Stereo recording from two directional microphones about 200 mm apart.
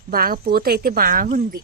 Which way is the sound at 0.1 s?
45° right (ahead or behind).